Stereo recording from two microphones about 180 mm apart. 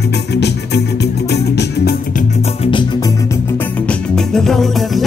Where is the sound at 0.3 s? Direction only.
70° left (ahead or behind).